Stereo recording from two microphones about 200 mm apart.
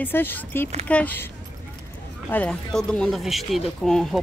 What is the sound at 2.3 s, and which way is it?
Speech, 5° left (ahead or behind).